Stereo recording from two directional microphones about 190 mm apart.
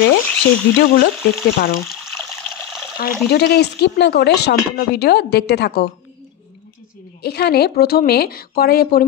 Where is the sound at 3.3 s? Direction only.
60° left (ahead or behind).